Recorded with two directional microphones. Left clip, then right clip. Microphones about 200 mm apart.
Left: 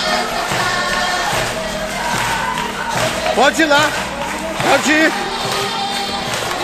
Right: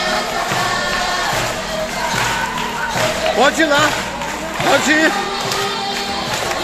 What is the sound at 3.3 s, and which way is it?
Speech, 20° left (ahead or behind).